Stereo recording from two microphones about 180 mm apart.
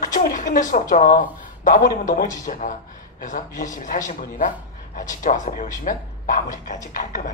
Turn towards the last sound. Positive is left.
turn(degrees=45)  # may be behind; listen again after turning